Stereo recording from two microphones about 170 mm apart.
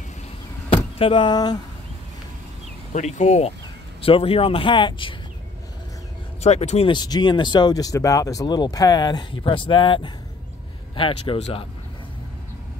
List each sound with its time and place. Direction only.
0.9 s speech: 30° left (ahead or behind)
2.9 s speech: 45° left (ahead or behind); by 5.1 s 30° left (ahead or behind)
6.4 s speech: 40° left (ahead or behind)
6.9 s speech: 25° left (ahead or behind)